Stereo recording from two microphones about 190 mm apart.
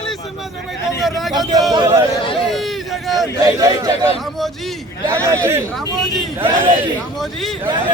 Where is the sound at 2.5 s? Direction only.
Centre (ahead or behind).